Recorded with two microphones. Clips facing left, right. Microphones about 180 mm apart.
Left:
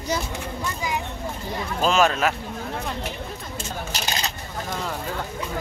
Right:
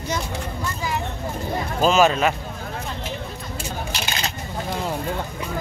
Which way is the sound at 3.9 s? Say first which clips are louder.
Right 1 dB; 40° left (ahead or behind).